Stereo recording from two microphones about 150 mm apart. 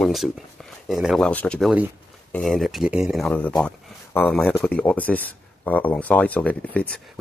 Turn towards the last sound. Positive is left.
turn(degrees=10)  # may be behind; listen again after turning